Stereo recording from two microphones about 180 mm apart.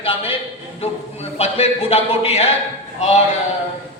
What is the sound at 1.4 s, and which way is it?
A man's voice, 35° left (ahead or behind).